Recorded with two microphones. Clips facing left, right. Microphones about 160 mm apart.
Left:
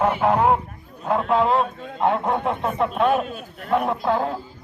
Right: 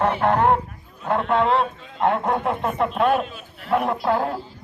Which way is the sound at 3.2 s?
45° left (ahead or behind).